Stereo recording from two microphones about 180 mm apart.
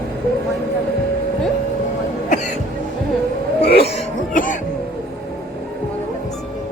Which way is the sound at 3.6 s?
65° left (ahead or behind).